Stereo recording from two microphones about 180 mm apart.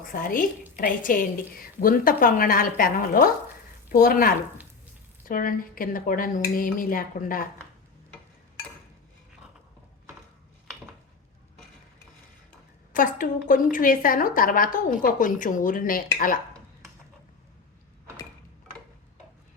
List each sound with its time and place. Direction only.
0.0 s a woman's voice: 50° left (ahead or behind)
12.9 s a woman's voice: 50° left (ahead or behind)